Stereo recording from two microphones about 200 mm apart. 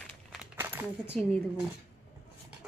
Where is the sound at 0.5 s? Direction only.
10° right (ahead or behind).